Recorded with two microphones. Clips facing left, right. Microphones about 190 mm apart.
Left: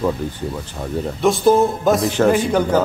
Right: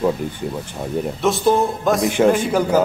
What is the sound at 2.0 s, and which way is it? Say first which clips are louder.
Speech: even; 15° right (ahead or behind).